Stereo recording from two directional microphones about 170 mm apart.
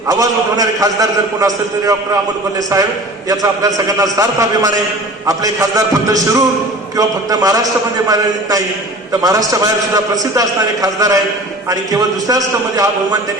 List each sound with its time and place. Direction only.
0.1 s a man's voice: 20° right (ahead or behind)
3.2 s a man's voice: 20° right (ahead or behind)